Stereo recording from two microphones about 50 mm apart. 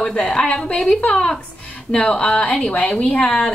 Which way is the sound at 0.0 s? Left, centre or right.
Centre.